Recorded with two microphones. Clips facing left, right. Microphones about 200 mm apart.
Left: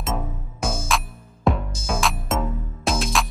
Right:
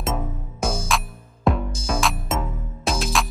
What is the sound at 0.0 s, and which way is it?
Music, centre (ahead or behind).